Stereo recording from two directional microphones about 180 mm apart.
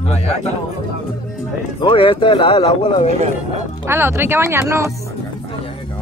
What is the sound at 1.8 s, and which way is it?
Speech, 30° left (ahead or behind).